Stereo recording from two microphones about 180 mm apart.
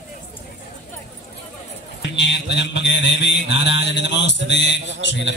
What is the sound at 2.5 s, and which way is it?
A man's voice, 75° left (ahead or behind).